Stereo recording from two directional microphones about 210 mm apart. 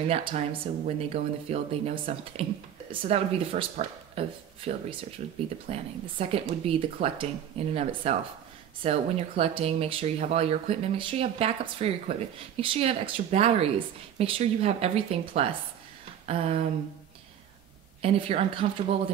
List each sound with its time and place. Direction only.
0.1 s speech: 25° right (ahead or behind)
18.0 s speech: 25° right (ahead or behind)